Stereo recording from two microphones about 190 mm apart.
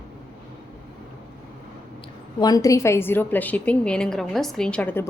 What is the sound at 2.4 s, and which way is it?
A woman's voice, 20° left (ahead or behind).